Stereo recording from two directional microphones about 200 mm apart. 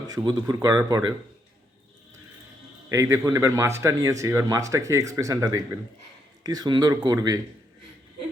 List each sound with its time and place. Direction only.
0.1 s speech: 20° right (ahead or behind)
2.9 s speech: 15° right (ahead or behind)